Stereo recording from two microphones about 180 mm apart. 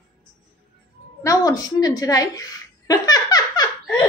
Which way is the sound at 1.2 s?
20° left (ahead or behind).